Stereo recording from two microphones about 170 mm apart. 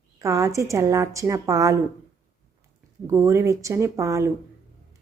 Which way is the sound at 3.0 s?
15° right (ahead or behind).